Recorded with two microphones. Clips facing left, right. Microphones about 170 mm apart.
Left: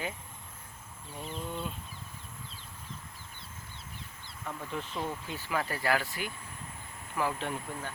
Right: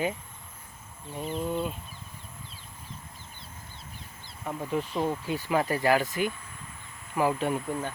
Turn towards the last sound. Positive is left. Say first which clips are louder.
# right 8 dB
turn(degrees=-15)  # may be behind; listen again after turning